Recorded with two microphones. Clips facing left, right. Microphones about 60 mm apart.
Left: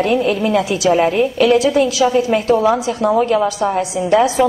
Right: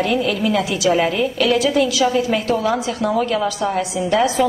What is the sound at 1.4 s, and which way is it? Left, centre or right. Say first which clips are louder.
A woman's voice: left 4 dB; left.